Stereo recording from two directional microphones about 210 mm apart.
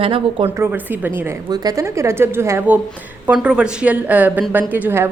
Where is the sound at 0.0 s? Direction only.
25° right (ahead or behind).